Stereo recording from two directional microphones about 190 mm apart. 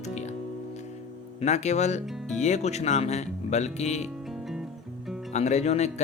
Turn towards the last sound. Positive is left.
turn(degrees=35)  # may be behind; listen again after turning